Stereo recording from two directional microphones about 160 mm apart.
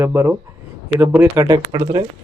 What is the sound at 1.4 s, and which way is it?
Speech, 25° right (ahead or behind).